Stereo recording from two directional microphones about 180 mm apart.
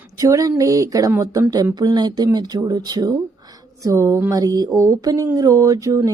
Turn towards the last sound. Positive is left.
turn(degrees=-20)  # may be behind; listen again after turning